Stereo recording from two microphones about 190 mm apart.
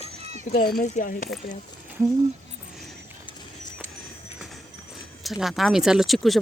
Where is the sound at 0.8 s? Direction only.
45° left (ahead or behind).